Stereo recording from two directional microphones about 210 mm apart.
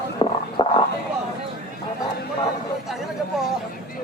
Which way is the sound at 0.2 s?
25° left (ahead or behind).